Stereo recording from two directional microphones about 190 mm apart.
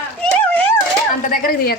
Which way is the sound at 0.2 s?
5° left (ahead or behind).